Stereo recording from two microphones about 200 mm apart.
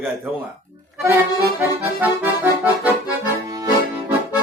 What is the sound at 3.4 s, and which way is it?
Accordion, 20° right (ahead or behind).